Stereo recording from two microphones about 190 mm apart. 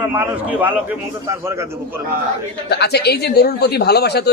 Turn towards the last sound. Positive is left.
turn(degrees=60)  # may be behind; listen again after turning